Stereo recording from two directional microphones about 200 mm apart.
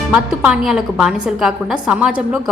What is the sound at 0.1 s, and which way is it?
A woman's voice, 5° right (ahead or behind).